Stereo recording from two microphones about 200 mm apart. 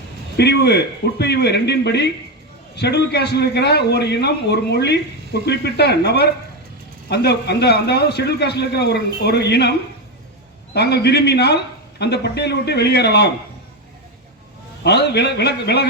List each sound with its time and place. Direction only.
0.3 s a man's voice: 55° left (ahead or behind)
10.8 s a man's voice: 55° left (ahead or behind)
14.8 s a man's voice: 55° left (ahead or behind)